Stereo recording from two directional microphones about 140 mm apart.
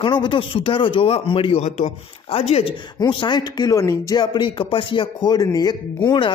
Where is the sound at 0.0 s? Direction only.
35° left (ahead or behind).